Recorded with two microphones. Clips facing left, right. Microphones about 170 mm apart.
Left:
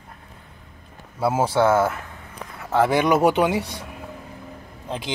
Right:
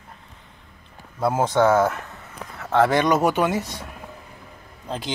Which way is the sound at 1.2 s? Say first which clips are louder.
Even; 10° left (ahead or behind).